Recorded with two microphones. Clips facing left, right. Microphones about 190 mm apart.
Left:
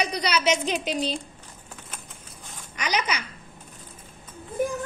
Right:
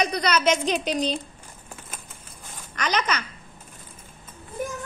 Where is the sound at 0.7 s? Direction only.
5° left (ahead or behind).